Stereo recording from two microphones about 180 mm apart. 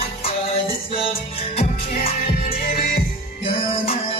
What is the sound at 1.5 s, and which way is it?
Music, 35° left (ahead or behind).